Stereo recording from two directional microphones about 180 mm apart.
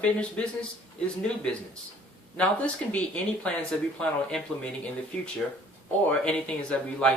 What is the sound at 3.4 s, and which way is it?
Speech, 5° left (ahead or behind).